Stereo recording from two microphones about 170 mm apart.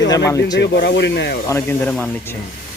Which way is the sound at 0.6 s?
85° left.